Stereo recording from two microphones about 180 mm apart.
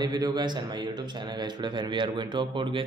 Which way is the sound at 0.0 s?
20° right (ahead or behind).